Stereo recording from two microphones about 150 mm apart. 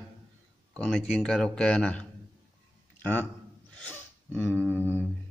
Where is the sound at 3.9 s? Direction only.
10° left (ahead or behind).